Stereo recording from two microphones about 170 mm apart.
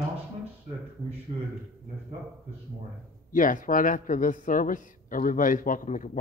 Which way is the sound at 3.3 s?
50° left (ahead or behind).